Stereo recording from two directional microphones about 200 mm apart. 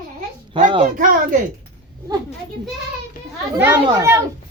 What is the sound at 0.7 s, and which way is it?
Speech, 35° right (ahead or behind).